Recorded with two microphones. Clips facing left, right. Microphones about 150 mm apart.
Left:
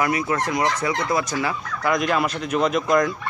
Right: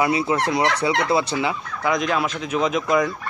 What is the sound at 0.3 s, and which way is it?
Speech, 20° right (ahead or behind).